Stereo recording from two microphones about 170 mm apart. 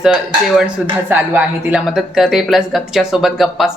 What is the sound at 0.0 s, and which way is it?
Speech, 5° right (ahead or behind).